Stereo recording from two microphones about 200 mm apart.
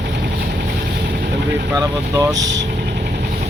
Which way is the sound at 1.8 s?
20° right (ahead or behind).